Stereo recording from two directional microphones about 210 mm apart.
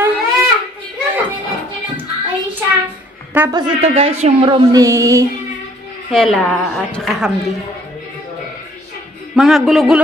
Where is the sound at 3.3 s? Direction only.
15° right (ahead or behind).